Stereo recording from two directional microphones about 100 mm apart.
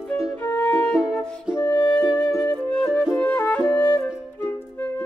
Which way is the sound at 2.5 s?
15° left (ahead or behind).